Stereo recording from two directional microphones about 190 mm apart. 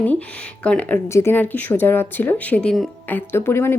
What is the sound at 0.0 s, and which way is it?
A woman's voice, 10° left (ahead or behind).